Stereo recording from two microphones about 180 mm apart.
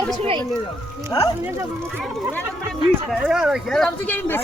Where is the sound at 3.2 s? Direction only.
5° right (ahead or behind).